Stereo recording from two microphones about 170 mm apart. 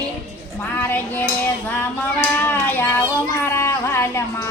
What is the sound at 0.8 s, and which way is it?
Music, 10° left (ahead or behind).